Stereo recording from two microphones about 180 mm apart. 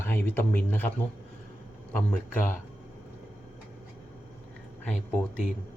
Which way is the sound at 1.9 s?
10° left (ahead or behind).